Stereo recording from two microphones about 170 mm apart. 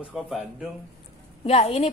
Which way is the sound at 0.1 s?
Centre (ahead or behind).